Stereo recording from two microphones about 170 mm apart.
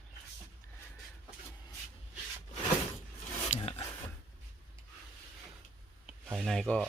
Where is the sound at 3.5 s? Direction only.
35° left (ahead or behind).